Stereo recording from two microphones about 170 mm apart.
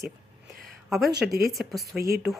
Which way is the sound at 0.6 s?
Centre (ahead or behind).